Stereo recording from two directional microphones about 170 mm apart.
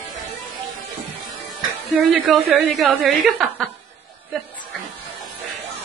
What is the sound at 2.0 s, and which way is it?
A woman's voice, centre (ahead or behind).